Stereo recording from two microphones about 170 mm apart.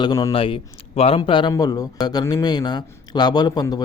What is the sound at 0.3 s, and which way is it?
A man's voice, 30° left (ahead or behind).